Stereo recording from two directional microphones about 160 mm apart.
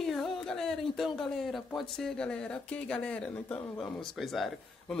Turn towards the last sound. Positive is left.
turn(degrees=0)  # may be behind; listen again after turning